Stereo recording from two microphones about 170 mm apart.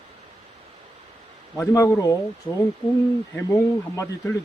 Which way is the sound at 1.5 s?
15° left (ahead or behind).